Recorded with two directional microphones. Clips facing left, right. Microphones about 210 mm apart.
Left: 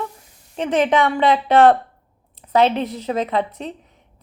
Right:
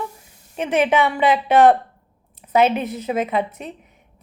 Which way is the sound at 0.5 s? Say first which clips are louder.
Left 1 dB; 10° right (ahead or behind).